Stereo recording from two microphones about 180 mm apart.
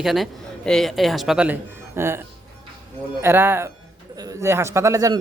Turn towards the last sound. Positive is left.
turn(degrees=-20)  # may be behind; listen again after turning